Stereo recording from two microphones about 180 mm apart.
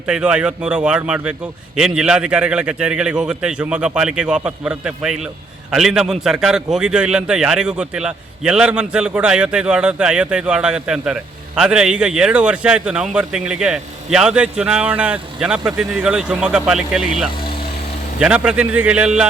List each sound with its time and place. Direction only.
0.1 s a man's voice: 5° right (ahead or behind)
18.2 s a man's voice: 5° right (ahead or behind)